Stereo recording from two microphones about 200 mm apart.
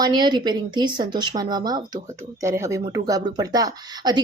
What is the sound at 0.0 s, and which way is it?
Speech, 20° right (ahead or behind).